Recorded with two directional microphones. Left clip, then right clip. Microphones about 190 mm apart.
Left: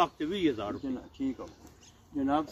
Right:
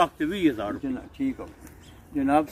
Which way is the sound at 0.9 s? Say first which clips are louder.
Right 5 dB; 25° right (ahead or behind).